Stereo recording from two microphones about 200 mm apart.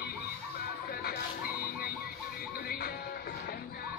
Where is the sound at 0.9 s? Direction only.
50° left (ahead or behind).